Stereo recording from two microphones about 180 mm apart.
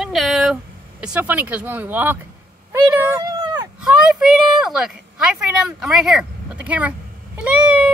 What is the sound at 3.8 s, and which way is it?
Speech, 5° right (ahead or behind).